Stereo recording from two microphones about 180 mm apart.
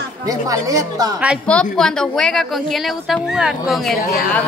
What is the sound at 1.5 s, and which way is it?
A woman's voice, 5° left (ahead or behind).